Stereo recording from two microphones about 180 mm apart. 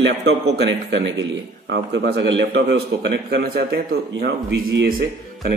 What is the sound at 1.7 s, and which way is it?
A man's voice, 70° right (ahead or behind).